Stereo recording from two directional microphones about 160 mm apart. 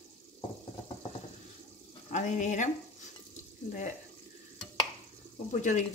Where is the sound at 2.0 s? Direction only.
50° left (ahead or behind).